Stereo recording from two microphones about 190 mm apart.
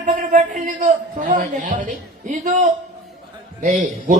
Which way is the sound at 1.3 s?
45° right (ahead or behind).